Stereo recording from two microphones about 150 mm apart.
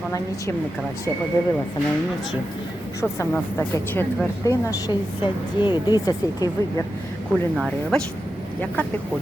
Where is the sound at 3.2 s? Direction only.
15° left (ahead or behind).